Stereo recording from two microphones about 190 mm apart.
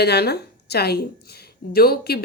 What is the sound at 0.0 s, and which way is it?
Speech, 60° left (ahead or behind).